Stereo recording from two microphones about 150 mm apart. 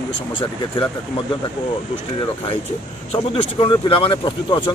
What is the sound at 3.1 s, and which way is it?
Speech, 35° left (ahead or behind).